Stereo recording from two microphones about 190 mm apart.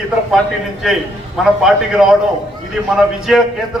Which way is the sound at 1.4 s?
Centre (ahead or behind).